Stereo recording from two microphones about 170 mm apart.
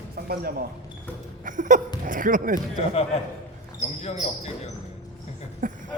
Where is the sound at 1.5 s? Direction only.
50° right (ahead or behind).